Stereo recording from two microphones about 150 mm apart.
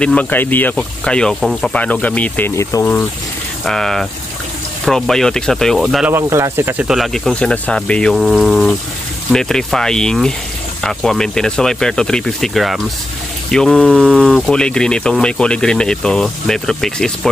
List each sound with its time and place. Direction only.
0.0 s speech: 10° left (ahead or behind)
3.6 s speech: 5° left (ahead or behind)
6.1 s speech: 15° right (ahead or behind)
6.9 s speech: centre (ahead or behind)